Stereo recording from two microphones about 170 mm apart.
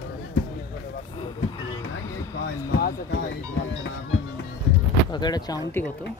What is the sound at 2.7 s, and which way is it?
Speech, 65° left (ahead or behind).